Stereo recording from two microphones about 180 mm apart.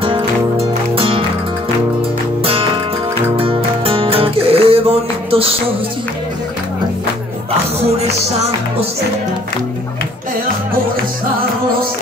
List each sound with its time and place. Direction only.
0.0 s music: 30° right (ahead or behind)
3.3 s music: 30° right (ahead or behind)